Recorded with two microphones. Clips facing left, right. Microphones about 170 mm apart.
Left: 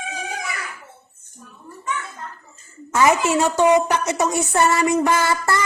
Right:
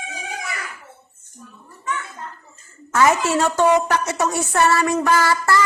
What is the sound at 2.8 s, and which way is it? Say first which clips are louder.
A woman's voice: even; 15° left (ahead or behind).